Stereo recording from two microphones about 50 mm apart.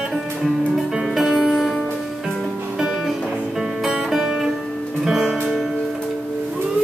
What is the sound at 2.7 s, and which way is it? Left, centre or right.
Music, centre.